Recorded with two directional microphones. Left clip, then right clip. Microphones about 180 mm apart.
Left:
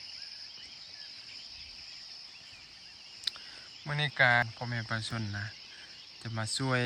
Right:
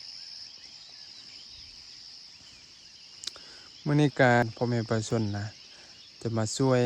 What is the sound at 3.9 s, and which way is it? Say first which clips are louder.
Speech: right 3 dB; 45° right (ahead or behind).